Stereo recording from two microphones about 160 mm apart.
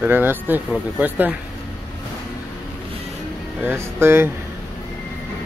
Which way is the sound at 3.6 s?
15° right (ahead or behind).